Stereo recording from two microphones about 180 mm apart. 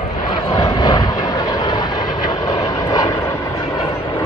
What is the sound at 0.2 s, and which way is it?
Vehicle, 25° left (ahead or behind).